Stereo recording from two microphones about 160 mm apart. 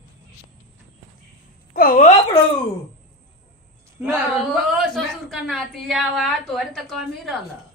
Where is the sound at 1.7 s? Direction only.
65° left (ahead or behind).